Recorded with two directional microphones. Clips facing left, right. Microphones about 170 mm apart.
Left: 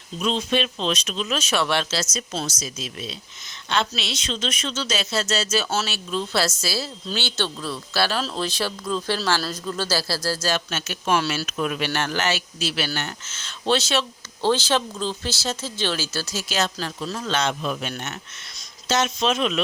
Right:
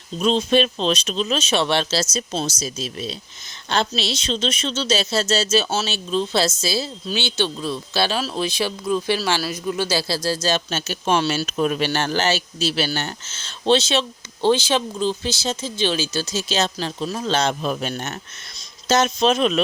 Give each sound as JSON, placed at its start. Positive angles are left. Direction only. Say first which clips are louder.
{"t": 0.2, "sound": "a man's voice", "louder": "right 5 dB", "side_deg": -35}
{"t": 17.2, "sound": "speech", "louder": "right 3 dB", "side_deg": -35}